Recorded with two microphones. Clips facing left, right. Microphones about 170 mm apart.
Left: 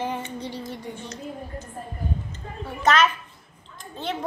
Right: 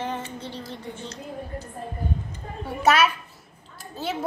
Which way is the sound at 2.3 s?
10° right (ahead or behind).